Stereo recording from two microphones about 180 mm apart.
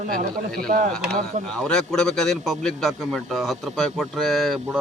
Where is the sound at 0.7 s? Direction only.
40° right (ahead or behind).